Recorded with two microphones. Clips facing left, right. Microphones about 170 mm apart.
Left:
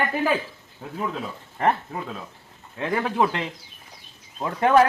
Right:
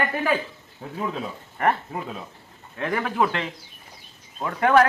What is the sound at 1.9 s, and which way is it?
Speech, 5° right (ahead or behind).